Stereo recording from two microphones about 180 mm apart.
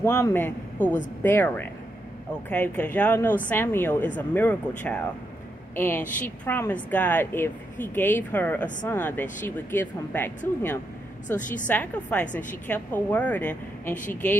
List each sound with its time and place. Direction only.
0.0 s a man's voice: 15° left (ahead or behind)
11.3 s a woman's voice: 45° left (ahead or behind)
11.6 s a woman's voice: 10° left (ahead or behind)